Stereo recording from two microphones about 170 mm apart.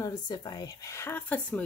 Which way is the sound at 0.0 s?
25° left (ahead or behind).